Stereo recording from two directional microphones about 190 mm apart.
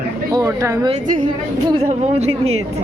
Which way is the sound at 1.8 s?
35° right (ahead or behind).